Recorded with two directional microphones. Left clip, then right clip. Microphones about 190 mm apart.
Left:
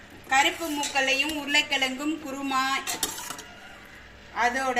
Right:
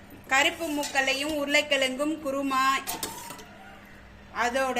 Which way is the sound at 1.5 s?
50° right (ahead or behind).